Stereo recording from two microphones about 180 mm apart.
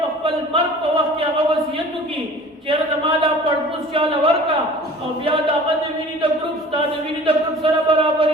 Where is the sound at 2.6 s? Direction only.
30° right (ahead or behind).